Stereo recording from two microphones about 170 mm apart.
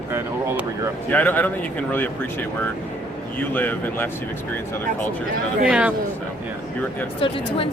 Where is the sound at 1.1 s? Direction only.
10° left (ahead or behind).